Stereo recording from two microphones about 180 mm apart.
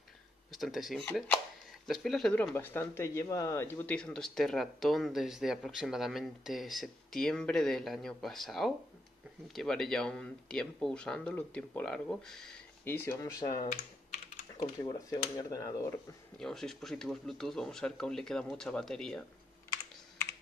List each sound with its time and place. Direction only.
0.5 s speech: centre (ahead or behind); by 13.6 s 20° left (ahead or behind)
14.6 s speech: 25° left (ahead or behind)
16.3 s speech: centre (ahead or behind)